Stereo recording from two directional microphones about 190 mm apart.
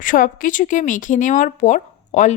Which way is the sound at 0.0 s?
45° left (ahead or behind).